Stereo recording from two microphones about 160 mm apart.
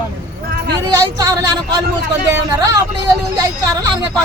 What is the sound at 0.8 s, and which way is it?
Speech, 20° right (ahead or behind).